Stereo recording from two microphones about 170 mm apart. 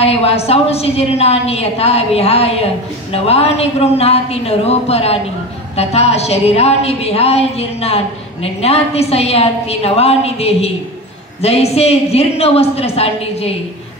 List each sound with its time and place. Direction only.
0.0 s a woman's voice: 35° left (ahead or behind)